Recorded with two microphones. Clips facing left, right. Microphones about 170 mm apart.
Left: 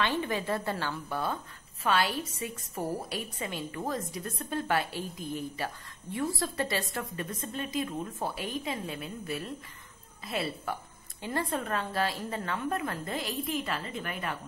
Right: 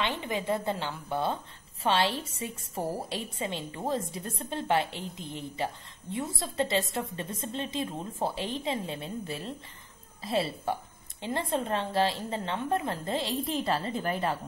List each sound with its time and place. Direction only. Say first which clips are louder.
0.0 s a woman's voice: left 1 dB; 20° right (ahead or behind)